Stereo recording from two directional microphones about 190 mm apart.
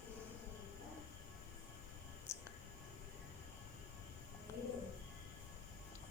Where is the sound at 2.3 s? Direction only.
15° left (ahead or behind).